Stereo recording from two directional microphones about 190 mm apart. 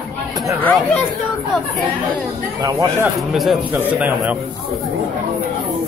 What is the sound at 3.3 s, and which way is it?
A man's voice, centre (ahead or behind).